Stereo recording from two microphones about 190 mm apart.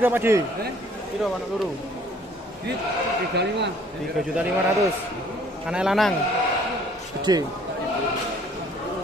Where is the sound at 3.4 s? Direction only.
65° right (ahead or behind).